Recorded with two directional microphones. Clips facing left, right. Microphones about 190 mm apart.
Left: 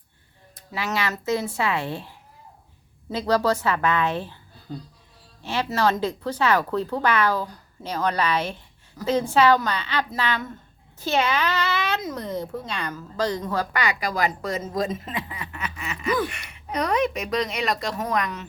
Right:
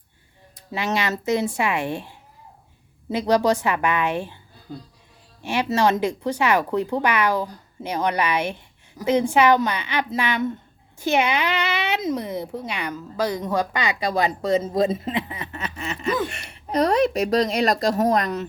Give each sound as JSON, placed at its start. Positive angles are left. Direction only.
{"t": 0.7, "sound": "a woman's voice", "side_deg": -25}
{"t": 3.1, "sound": "a woman's voice", "side_deg": -15}
{"t": 5.4, "sound": "a woman's voice", "side_deg": -15}